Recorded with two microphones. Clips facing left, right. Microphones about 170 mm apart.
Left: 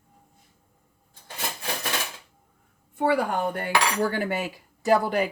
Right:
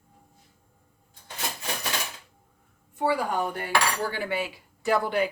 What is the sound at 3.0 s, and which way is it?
Speech, 55° left (ahead or behind).